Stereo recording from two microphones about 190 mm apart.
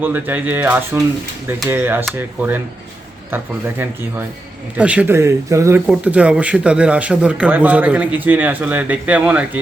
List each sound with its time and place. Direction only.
0.0 s speech: 10° right (ahead or behind)